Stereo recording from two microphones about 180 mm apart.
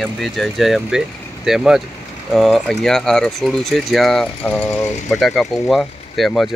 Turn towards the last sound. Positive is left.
turn(degrees=0)  # may be behind; listen again after turning